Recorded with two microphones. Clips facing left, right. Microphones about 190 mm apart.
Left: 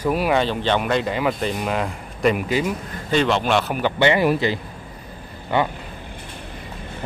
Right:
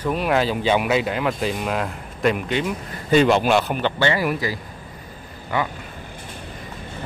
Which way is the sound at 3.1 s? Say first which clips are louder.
Right 3 dB; 10° right (ahead or behind).